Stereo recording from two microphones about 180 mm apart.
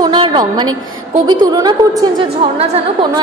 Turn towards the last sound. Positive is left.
turn(degrees=-35)  # may be behind; listen again after turning